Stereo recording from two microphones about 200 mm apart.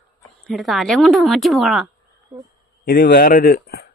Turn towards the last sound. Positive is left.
turn(degrees=50)  # may be behind; listen again after turning